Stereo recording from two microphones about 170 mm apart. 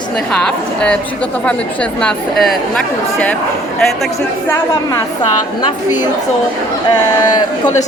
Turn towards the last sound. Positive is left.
turn(degrees=25)  # may be behind; listen again after turning